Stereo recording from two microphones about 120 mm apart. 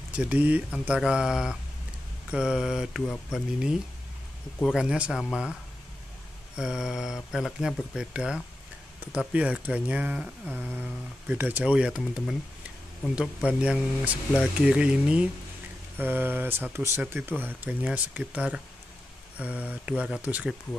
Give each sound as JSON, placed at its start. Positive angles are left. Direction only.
{"t": 0.1, "sound": "speech", "side_deg": -10}
{"t": 4.7, "sound": "speech", "side_deg": -10}
{"t": 11.3, "sound": "speech", "side_deg": -15}
{"t": 13.5, "sound": "speech", "side_deg": -10}